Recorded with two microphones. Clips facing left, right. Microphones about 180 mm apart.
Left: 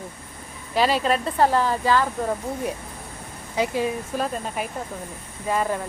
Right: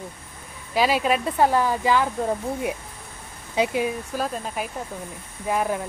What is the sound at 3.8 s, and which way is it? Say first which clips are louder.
Speech: left 1 dB; centre (ahead or behind).